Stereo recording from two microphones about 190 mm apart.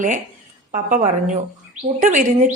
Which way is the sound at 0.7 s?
40° right (ahead or behind).